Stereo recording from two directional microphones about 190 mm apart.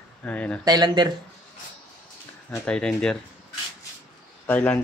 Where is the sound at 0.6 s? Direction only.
20° right (ahead or behind).